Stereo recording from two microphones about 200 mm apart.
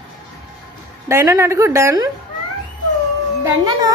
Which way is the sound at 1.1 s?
15° right (ahead or behind).